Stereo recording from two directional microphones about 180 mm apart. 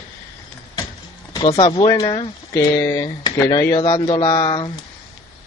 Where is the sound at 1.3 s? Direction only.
25° left (ahead or behind).